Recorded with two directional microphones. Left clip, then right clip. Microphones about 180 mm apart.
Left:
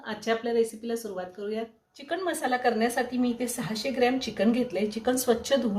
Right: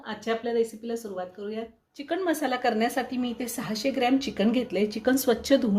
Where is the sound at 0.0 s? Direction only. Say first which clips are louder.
Left 1 dB; centre (ahead or behind).